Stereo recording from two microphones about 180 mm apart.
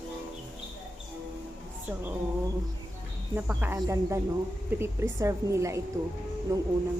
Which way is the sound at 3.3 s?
10° right (ahead or behind).